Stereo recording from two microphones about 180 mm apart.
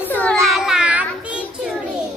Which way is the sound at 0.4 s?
Centre (ahead or behind).